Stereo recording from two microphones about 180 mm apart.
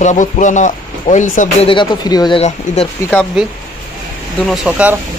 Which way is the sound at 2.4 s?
40° left (ahead or behind).